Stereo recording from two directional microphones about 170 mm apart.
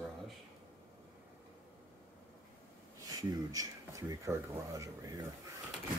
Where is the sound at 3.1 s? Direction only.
20° right (ahead or behind).